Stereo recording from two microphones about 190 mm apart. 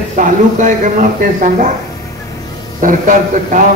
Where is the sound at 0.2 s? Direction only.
45° right (ahead or behind).